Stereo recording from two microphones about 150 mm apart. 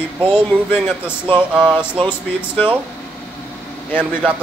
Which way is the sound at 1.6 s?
30° right (ahead or behind).